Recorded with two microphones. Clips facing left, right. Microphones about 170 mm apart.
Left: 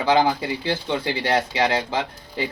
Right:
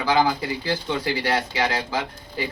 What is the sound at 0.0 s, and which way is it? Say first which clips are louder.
Speech: left 2 dB; 25° left (ahead or behind).